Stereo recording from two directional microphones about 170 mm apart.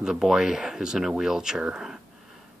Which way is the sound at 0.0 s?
5° right (ahead or behind).